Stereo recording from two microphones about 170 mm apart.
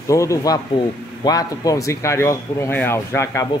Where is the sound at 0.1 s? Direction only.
20° left (ahead or behind).